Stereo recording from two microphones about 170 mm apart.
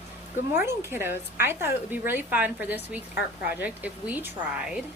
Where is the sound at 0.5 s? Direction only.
15° right (ahead or behind).